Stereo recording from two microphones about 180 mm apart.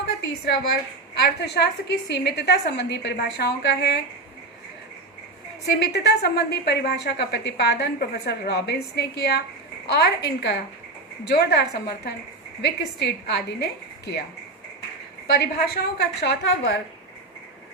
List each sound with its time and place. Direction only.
1.2 s a woman's voice: 65° left (ahead or behind)
5.8 s a woman's voice: 65° left (ahead or behind)
15.4 s a woman's voice: 65° left (ahead or behind)